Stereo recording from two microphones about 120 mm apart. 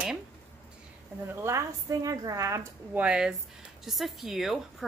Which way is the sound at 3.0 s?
10° right (ahead or behind).